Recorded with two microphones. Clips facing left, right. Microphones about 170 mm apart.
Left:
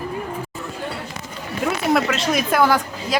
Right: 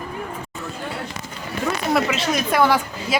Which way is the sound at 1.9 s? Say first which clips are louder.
Even; centre (ahead or behind).